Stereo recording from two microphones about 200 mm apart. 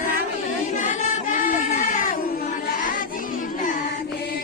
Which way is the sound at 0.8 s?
40° left (ahead or behind).